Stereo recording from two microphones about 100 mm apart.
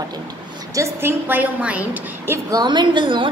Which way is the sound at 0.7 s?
25° right (ahead or behind).